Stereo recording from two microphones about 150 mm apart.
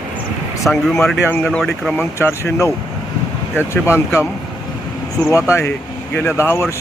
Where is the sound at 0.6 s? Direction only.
5° left (ahead or behind).